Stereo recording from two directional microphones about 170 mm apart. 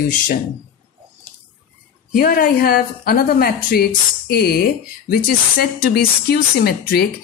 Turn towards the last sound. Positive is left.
turn(degrees=70)  # may be behind; listen again after turning